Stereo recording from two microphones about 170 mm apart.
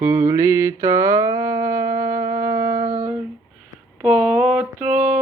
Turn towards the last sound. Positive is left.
turn(degrees=-5)  # may be behind; listen again after turning